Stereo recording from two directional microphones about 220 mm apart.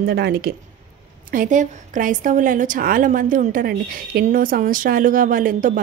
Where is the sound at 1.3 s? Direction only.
35° right (ahead or behind).